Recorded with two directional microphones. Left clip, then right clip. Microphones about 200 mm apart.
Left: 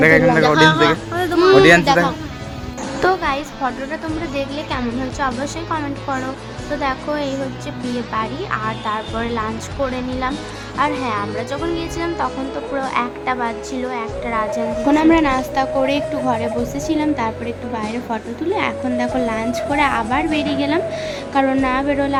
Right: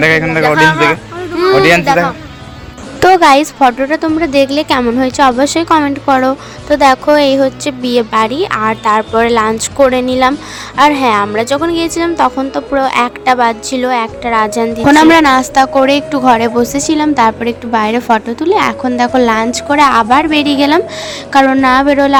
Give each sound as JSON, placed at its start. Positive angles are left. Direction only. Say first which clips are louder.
{"t": 0.0, "sound": "a child's voice", "louder": "right 2 dB", "side_deg": -15}
{"t": 3.0, "sound": "a woman's voice", "louder": "right 12 dB", "side_deg": -45}